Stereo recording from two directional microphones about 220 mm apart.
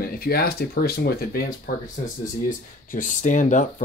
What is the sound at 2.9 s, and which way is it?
Speech, 35° left (ahead or behind).